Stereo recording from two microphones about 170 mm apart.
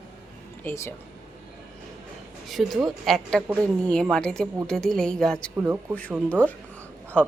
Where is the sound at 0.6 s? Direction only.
15° left (ahead or behind).